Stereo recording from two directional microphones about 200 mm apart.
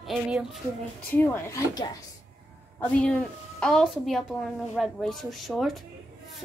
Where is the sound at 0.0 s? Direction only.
Centre (ahead or behind).